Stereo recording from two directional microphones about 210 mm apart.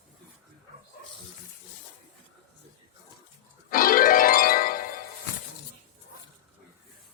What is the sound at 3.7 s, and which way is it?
Music, 40° left (ahead or behind).